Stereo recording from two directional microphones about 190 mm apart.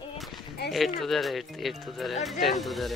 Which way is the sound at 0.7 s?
Centre (ahead or behind).